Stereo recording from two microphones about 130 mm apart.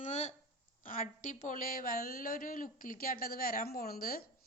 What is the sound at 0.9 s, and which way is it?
A woman's voice, 85° left.